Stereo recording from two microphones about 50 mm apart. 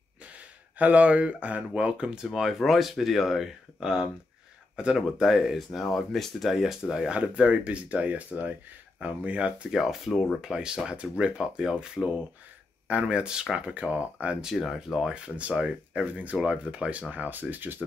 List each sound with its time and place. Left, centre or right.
0.7 s speech: right
2.2 s speech: centre
5.7 s speech: centre
6.5 s speech: centre; by 9.7 s right
9.7 s speech: centre
10.4 s speech: centre
13.7 s speech: right
14.5 s speech: centre
15.1 s speech: right
16.1 s speech: right
17.1 s speech: right